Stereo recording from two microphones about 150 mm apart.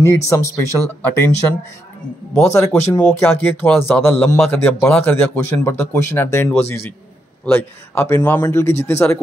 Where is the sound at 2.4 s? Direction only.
20° left (ahead or behind).